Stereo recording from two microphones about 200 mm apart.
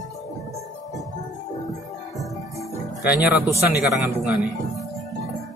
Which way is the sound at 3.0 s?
5° right (ahead or behind).